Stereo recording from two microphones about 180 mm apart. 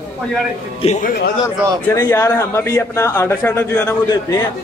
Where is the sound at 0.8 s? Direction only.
40° left (ahead or behind).